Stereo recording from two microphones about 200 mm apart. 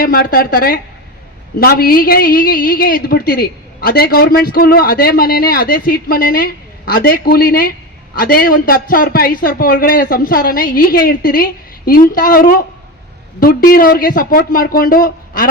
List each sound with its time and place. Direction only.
0.0 s a woman's voice: 45° left (ahead or behind)